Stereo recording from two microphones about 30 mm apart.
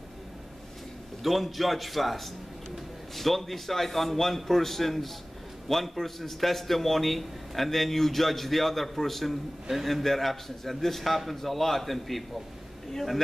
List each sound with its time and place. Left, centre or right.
1.2 s a man's voice: centre